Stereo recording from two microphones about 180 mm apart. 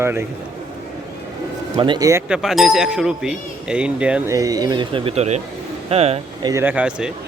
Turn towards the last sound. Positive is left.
turn(degrees=-5)  # may be behind; listen again after turning